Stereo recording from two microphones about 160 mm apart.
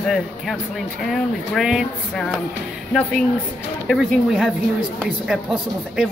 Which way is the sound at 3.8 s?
Centre (ahead or behind).